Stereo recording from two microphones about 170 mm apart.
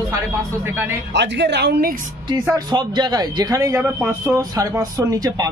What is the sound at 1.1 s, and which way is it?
Speech, 90° right.